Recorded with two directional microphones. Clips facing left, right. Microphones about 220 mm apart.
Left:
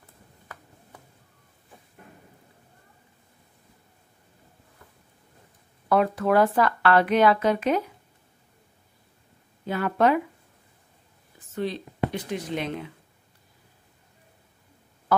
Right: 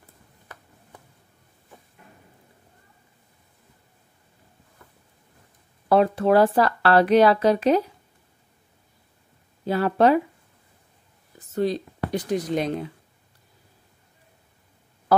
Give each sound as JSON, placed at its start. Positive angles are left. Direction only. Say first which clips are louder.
{"t": 5.9, "sound": "speech", "louder": "right 4 dB", "side_deg": -30}
{"t": 9.7, "sound": "speech", "louder": "right 4 dB", "side_deg": -35}
{"t": 11.5, "sound": "speech", "louder": "right 6 dB", "side_deg": -40}